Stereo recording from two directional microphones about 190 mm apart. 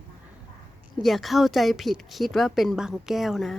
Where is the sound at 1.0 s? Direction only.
Centre (ahead or behind).